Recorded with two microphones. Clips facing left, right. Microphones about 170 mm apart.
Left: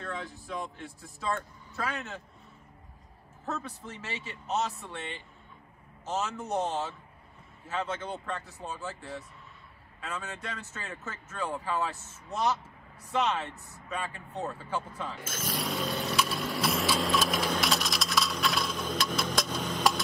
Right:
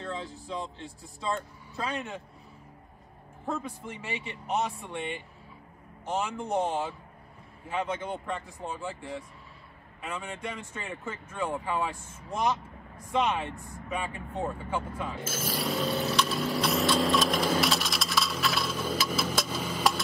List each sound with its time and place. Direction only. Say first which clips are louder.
0.0 s speech: right 2 dB; 20° right (ahead or behind)
3.4 s speech: right 3 dB; 10° right (ahead or behind)
15.2 s a sound: right 3 dB; 5° right (ahead or behind)